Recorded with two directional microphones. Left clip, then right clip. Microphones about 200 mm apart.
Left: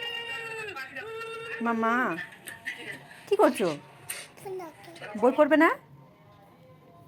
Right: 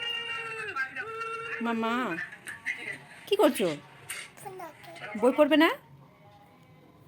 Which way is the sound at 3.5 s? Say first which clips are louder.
Left 1 dB; 10° left (ahead or behind).